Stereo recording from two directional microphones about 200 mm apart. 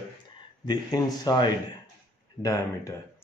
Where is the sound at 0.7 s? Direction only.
20° left (ahead or behind).